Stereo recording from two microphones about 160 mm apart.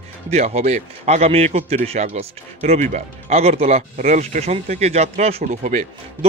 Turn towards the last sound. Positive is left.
turn(degrees=-45)  # may be behind; listen again after turning